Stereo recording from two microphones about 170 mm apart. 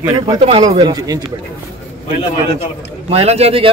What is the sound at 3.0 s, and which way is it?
Speech, 35° right (ahead or behind).